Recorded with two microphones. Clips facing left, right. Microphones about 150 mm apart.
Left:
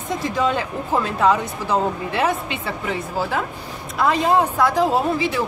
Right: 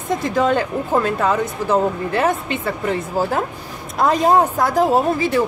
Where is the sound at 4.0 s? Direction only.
40° right (ahead or behind).